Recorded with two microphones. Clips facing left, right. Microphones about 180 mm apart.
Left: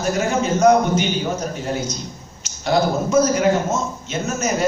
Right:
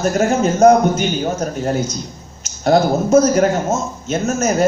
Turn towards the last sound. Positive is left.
turn(degrees=-45)  # may be behind; listen again after turning